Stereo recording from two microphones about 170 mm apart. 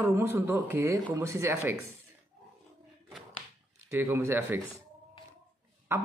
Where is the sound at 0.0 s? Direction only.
15° right (ahead or behind).